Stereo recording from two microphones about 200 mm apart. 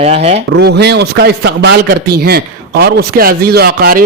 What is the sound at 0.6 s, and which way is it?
Speech, 55° right (ahead or behind).